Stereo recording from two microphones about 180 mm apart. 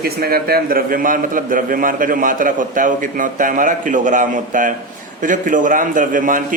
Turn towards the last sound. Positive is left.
turn(degrees=-45)  # may be behind; listen again after turning